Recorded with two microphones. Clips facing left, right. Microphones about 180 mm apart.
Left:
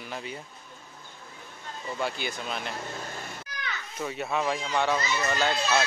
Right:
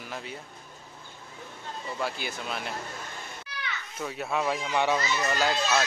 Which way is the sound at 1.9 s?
5° right (ahead or behind).